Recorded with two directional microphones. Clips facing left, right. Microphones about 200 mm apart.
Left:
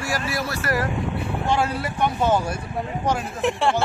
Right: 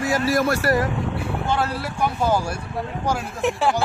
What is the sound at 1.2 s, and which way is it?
Speech, 5° left (ahead or behind).